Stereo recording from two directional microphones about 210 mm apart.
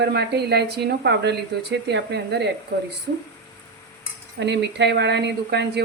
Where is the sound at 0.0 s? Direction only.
50° right (ahead or behind).